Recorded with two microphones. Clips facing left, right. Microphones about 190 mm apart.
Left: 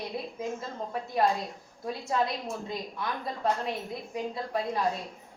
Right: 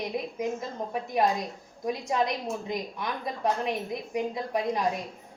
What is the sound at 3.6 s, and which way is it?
A woman's voice, 15° right (ahead or behind).